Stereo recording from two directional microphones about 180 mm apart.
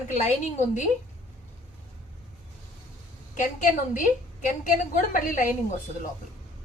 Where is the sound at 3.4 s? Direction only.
45° left (ahead or behind).